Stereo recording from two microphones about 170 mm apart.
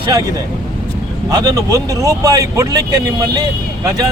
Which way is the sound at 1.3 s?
20° right (ahead or behind).